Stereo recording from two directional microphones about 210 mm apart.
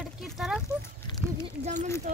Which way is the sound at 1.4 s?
30° right (ahead or behind).